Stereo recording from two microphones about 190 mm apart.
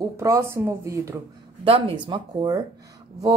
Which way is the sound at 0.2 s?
15° right (ahead or behind).